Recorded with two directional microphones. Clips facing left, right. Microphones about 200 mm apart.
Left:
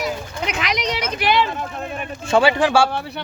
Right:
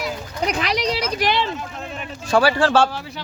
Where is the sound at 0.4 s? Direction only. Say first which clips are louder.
Right 3 dB; 35° right (ahead or behind).